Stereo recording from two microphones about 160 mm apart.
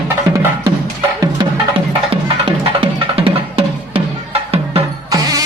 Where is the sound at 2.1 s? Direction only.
35° right (ahead or behind).